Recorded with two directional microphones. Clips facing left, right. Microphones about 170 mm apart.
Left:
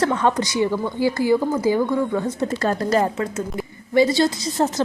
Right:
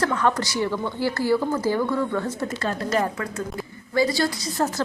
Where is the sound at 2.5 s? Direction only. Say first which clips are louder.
Left 5 dB; 35° left (ahead or behind).